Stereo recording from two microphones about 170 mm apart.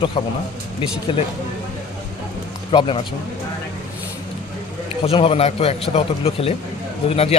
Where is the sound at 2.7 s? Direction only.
30° left (ahead or behind).